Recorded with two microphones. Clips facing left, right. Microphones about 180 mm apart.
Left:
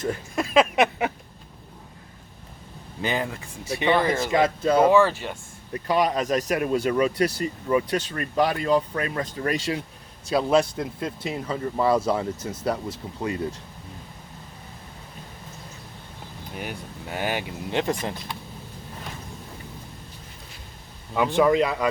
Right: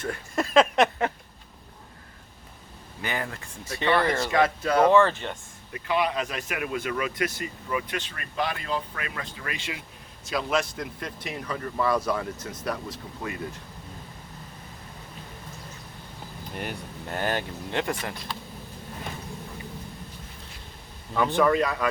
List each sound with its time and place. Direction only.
0.1 s a sound: 5° left (ahead or behind)
3.0 s speech: 20° left (ahead or behind)
4.8 s speech: 5° left (ahead or behind)
5.7 s speech: 40° left (ahead or behind)
16.5 s speech: centre (ahead or behind)
17.7 s speech: 20° left (ahead or behind)
21.3 s speech: 15° left (ahead or behind)